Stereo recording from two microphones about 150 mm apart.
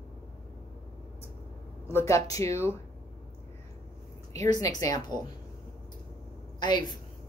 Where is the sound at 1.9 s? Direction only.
15° left (ahead or behind).